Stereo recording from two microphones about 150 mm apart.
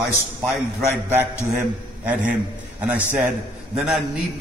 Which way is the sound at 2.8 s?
10° right (ahead or behind).